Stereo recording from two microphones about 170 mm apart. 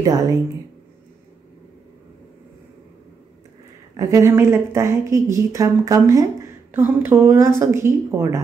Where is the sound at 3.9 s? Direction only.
20° right (ahead or behind).